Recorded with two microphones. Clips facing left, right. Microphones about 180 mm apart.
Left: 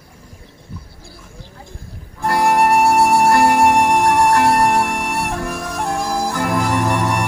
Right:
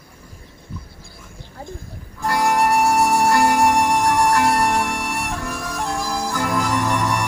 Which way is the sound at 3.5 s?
50° left (ahead or behind).